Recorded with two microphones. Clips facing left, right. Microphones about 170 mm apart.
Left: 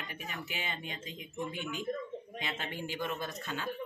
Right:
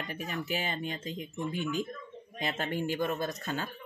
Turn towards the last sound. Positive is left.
turn(degrees=-40)  # may be behind; listen again after turning